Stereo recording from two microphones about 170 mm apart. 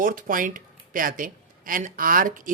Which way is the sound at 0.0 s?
50° right (ahead or behind).